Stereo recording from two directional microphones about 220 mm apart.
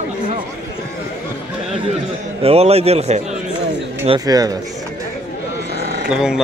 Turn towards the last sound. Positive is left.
turn(degrees=-5)  # may be behind; listen again after turning